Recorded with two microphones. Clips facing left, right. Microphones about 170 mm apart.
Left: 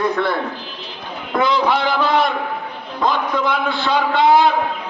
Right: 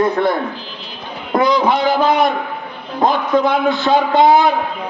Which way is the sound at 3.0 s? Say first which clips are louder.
Right 5 dB; 50° right (ahead or behind).